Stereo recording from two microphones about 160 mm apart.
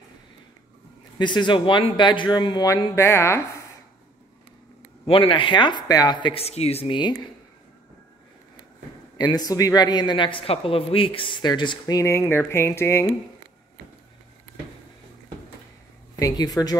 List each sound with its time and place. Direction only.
1.1 s speech: 30° left (ahead or behind)
5.0 s speech: 35° left (ahead or behind)
9.2 s speech: 25° left (ahead or behind)
16.2 s speech: 20° left (ahead or behind)